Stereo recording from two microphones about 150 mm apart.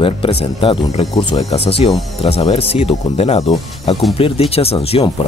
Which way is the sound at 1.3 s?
40° left (ahead or behind).